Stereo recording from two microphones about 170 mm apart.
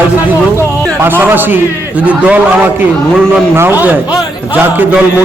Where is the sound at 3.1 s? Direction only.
Centre (ahead or behind).